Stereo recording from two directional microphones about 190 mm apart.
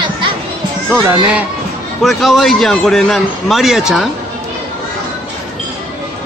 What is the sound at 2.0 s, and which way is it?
A man's voice, centre (ahead or behind).